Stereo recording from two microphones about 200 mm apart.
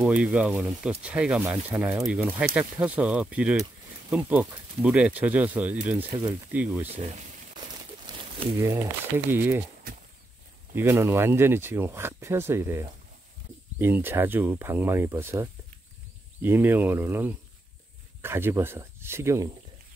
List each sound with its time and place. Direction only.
0.0 s speech: 5° right (ahead or behind)
8.1 s a sound: 20° right (ahead or behind)
8.5 s speech: 15° right (ahead or behind)
10.7 s speech: 10° right (ahead or behind)